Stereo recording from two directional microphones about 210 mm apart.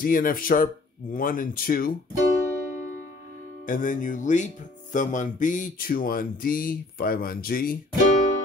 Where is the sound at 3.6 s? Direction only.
40° left (ahead or behind).